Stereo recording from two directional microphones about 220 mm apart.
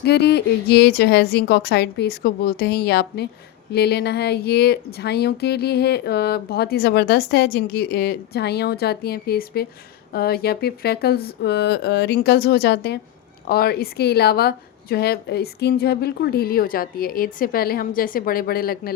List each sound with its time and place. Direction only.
0.0 s speech: 50° left (ahead or behind)